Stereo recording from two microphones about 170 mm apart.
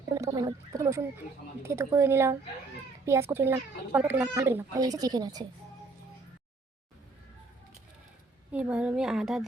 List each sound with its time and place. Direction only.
0.1 s a sound: 20° right (ahead or behind)
1.6 s a child's voice: 15° right (ahead or behind)
8.5 s a woman's voice: 5° right (ahead or behind)